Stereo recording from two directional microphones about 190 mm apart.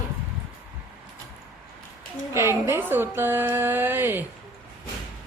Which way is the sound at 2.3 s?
15° right (ahead or behind).